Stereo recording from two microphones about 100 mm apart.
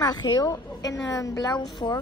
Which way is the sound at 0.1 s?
45° left (ahead or behind).